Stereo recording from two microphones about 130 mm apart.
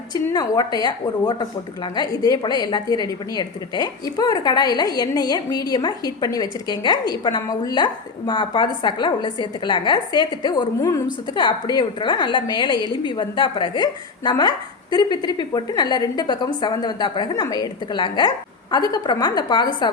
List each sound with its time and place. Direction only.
0.1 s speech: 30° left (ahead or behind)
11.3 s speech: 35° left (ahead or behind)